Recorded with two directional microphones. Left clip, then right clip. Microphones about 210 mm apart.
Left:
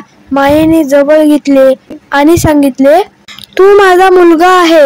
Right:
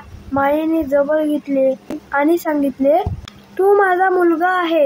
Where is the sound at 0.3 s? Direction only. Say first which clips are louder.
Left 10 dB; 45° left (ahead or behind).